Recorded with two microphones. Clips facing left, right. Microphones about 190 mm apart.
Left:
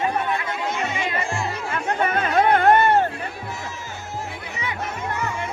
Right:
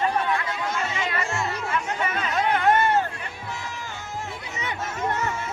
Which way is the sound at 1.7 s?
60° left (ahead or behind).